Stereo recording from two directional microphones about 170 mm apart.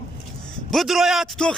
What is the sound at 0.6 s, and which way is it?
Speech, centre (ahead or behind).